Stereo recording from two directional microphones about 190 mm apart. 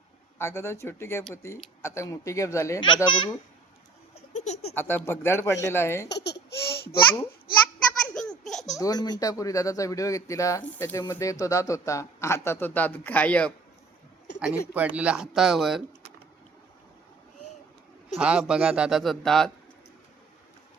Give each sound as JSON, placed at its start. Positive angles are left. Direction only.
{"t": 0.3, "sound": "speech", "side_deg": 15}
{"t": 4.1, "sound": "laughter", "side_deg": 35}
{"t": 4.7, "sound": "speech", "side_deg": 10}
{"t": 6.1, "sound": "babbling", "side_deg": 65}
{"t": 8.0, "sound": "baby laughter", "side_deg": 5}
{"t": 8.7, "sound": "speech", "side_deg": 20}
{"t": 14.3, "sound": "speech", "side_deg": -5}
{"t": 18.2, "sound": "speech", "side_deg": -5}